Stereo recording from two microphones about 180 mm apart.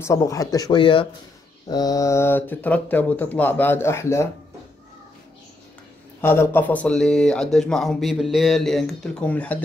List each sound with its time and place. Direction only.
0.0 s speech: 15° left (ahead or behind)
6.2 s speech: 15° left (ahead or behind)